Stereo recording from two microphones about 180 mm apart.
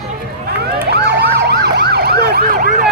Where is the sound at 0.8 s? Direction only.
65° right (ahead or behind).